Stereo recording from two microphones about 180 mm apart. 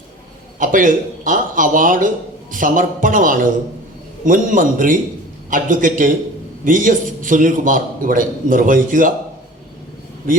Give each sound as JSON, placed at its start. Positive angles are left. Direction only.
{"t": 0.6, "sound": "a man's voice", "side_deg": -45}